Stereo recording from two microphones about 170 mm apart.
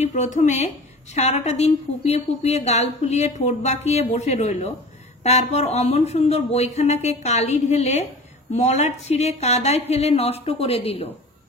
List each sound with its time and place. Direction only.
0.0 s a woman's voice: 45° left (ahead or behind)